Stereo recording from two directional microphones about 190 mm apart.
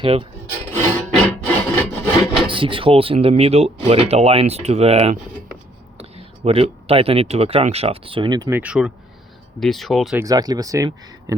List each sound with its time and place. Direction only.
0.0 s speech: 30° right (ahead or behind)
0.7 s filing: 10° left (ahead or behind)
1.1 s music: 5° left (ahead or behind)
2.5 s speech: 25° right (ahead or behind); by 10.2 s centre (ahead or behind)
10.2 s speech: 20° right (ahead or behind)